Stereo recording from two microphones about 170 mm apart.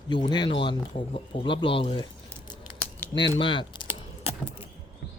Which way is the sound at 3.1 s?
30° left (ahead or behind).